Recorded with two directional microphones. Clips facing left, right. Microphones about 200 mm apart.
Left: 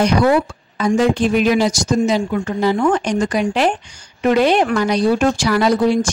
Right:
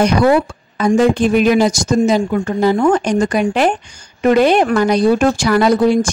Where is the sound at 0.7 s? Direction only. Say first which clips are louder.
Right 3 dB; 50° right (ahead or behind).